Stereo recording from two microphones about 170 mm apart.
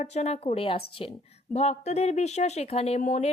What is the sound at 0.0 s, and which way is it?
A woman's voice, 40° left (ahead or behind).